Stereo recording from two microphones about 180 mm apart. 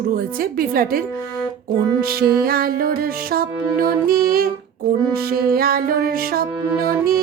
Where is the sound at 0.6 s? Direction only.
55° right (ahead or behind).